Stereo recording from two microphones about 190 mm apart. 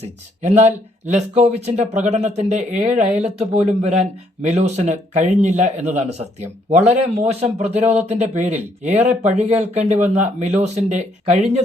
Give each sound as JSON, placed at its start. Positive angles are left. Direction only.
{"t": 0.4, "sound": "speech", "side_deg": -35}